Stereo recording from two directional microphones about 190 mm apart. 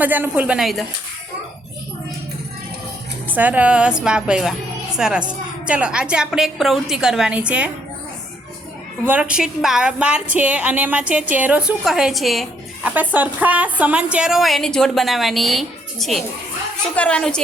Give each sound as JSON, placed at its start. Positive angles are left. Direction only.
{"t": 0.0, "sound": "a woman's voice", "side_deg": -10}
{"t": 3.2, "sound": "a woman's voice", "side_deg": -10}
{"t": 9.0, "sound": "a woman's voice", "side_deg": -5}